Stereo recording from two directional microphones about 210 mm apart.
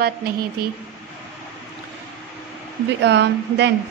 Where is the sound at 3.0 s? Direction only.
55° right (ahead or behind).